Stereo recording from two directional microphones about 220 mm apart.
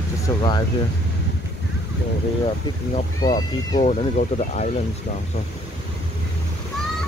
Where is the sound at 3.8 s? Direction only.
35° left (ahead or behind).